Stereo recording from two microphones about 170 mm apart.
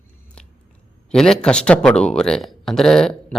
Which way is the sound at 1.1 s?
5° left (ahead or behind).